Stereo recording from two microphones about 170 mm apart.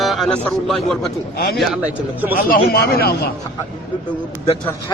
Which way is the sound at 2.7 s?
65° left (ahead or behind).